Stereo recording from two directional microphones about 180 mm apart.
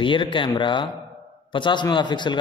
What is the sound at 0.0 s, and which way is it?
A man's voice, 25° left (ahead or behind).